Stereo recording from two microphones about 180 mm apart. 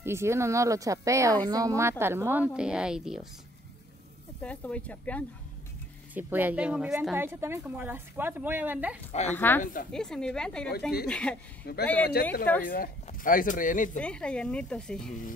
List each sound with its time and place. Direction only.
0.0 s speech: 15° right (ahead or behind)
4.4 s speech: 5° left (ahead or behind)
6.1 s speech: 10° right (ahead or behind)
9.3 s speech: 10° left (ahead or behind)
9.6 s a woman's voice: 50° left (ahead or behind)
9.9 s speech: 5° left (ahead or behind)
11.6 s a woman's voice: 65° left (ahead or behind)
12.6 s a woman's voice: 50° left (ahead or behind)
13.9 s speech: 5° left (ahead or behind)